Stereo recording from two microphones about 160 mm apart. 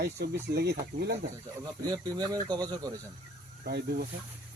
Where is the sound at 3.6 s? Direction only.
80° right.